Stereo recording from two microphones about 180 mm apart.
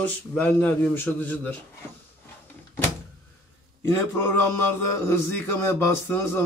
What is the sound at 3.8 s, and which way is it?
Speech, 15° left (ahead or behind).